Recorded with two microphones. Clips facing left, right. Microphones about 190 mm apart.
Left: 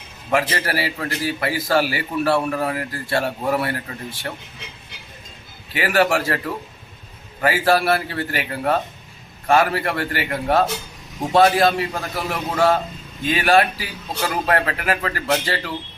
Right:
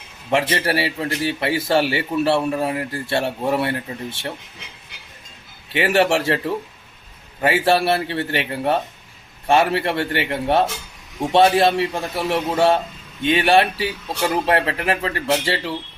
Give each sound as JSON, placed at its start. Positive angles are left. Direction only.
{"t": 0.3, "sound": "a man's voice", "side_deg": -25}
{"t": 5.7, "sound": "a man's voice", "side_deg": -25}